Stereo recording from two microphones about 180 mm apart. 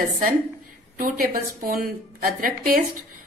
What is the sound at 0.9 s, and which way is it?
A woman's voice, 50° right (ahead or behind).